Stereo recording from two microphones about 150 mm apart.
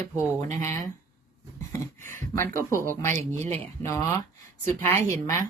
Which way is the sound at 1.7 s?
15° left (ahead or behind).